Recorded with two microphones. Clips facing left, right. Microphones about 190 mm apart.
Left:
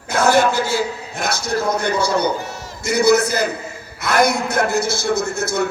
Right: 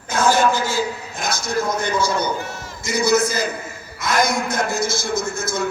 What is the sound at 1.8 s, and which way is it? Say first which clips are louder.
A man's voice: left 3 dB; 65° left (ahead or behind).